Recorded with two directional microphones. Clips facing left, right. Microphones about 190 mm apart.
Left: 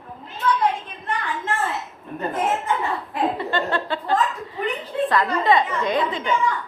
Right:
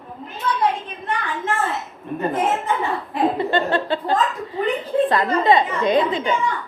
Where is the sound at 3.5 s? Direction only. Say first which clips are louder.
Right 4 dB; 25° right (ahead or behind).